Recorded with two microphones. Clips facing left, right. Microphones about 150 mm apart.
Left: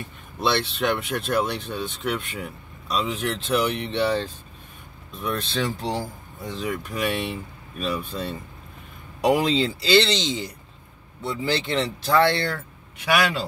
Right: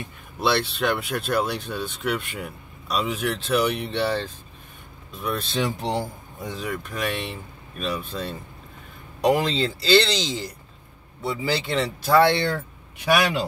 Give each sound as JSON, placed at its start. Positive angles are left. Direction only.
{"t": 0.4, "sound": "speech", "side_deg": -5}
{"t": 5.8, "sound": "speech", "side_deg": -20}
{"t": 6.5, "sound": "speech", "side_deg": 0}